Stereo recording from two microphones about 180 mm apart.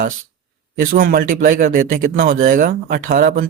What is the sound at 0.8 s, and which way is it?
Speech, 50° right (ahead or behind).